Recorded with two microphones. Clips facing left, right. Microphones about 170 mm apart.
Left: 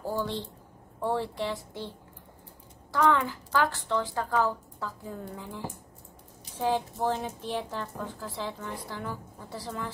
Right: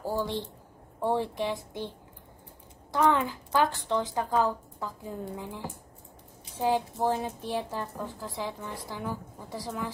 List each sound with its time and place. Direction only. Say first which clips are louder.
0.0 s a woman's voice: right 1 dB; 15° right (ahead or behind)
2.9 s a woman's voice: even; 20° right (ahead or behind)
6.6 s a woman's voice: right 1 dB; 15° right (ahead or behind)